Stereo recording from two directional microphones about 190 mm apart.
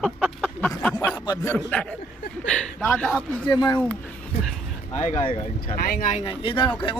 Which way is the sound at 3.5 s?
25° left (ahead or behind).